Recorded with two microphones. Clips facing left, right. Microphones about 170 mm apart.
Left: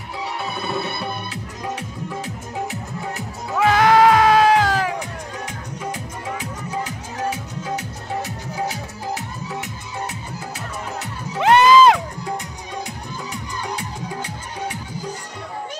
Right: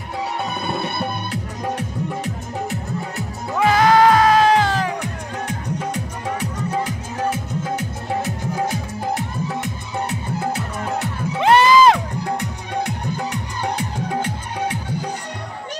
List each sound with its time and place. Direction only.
3.5 s music: centre (ahead or behind)
4.9 s music: 65° right (ahead or behind)
11.4 s crowd: centre (ahead or behind)
12.4 s music: 65° right (ahead or behind)